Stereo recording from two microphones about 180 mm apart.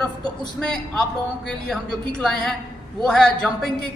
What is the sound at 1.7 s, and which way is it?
A woman's voice, 5° left (ahead or behind).